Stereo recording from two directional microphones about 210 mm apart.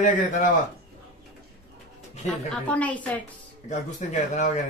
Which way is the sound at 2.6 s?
5° left (ahead or behind).